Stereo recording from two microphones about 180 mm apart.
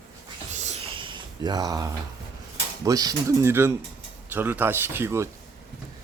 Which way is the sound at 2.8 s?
20° right (ahead or behind).